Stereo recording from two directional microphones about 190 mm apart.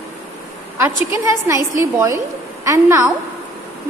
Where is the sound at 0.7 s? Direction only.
15° right (ahead or behind).